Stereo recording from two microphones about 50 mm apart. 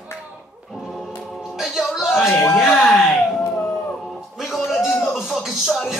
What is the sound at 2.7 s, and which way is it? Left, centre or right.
Music, centre.